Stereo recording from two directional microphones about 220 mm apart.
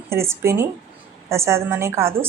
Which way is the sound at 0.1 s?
10° right (ahead or behind).